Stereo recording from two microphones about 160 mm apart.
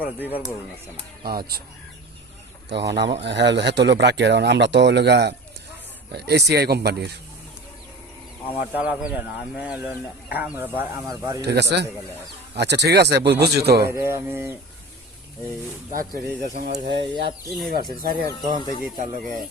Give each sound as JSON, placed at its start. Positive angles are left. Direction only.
{"t": 0.0, "sound": "speech", "side_deg": -10}
{"t": 1.3, "sound": "speech", "side_deg": -70}
{"t": 2.6, "sound": "speech", "side_deg": -90}
{"t": 8.7, "sound": "speech", "side_deg": -5}
{"t": 11.4, "sound": "speech", "side_deg": -90}
{"t": 13.8, "sound": "speech", "side_deg": -15}
{"t": 15.9, "sound": "speech", "side_deg": -60}
{"t": 17.7, "sound": "speech", "side_deg": -70}